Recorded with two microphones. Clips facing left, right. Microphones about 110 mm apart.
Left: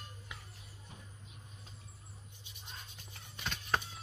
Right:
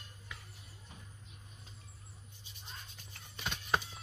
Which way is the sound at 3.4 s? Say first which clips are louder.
Right 1 dB; 5° right (ahead or behind).